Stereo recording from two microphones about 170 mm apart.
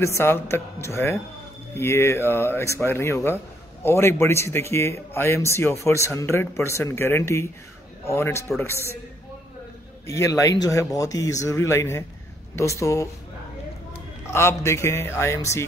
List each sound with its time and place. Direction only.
0.0 s speech: 15° left (ahead or behind)
10.0 s speech: 20° left (ahead or behind)
14.2 s speech: 15° left (ahead or behind)